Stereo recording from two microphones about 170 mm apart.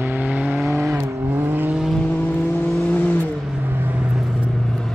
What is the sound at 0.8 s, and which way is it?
Vehicle, 15° right (ahead or behind).